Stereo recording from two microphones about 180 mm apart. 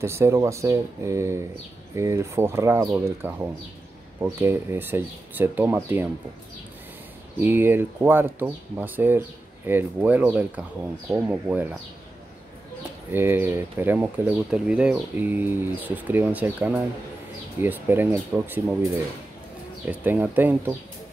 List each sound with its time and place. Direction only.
0.0 s speech: 15° right (ahead or behind)
7.3 s speech: 10° right (ahead or behind)
13.1 s speech: 10° right (ahead or behind)
19.9 s speech: 10° right (ahead or behind)